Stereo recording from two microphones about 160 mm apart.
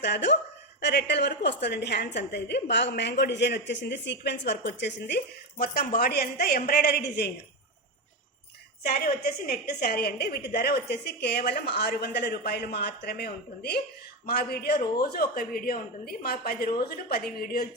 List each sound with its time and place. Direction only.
0.0 s speech: 90° left
8.8 s speech: 75° left (ahead or behind)